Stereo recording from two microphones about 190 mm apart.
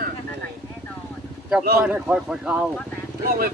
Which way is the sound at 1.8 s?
5° right (ahead or behind).